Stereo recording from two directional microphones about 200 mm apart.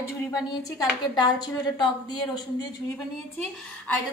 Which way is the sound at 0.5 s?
20° left (ahead or behind).